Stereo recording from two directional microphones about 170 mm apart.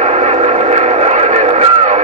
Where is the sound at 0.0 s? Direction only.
40° right (ahead or behind).